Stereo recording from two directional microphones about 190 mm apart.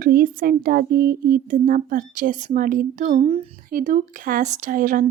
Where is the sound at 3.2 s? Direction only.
30° right (ahead or behind).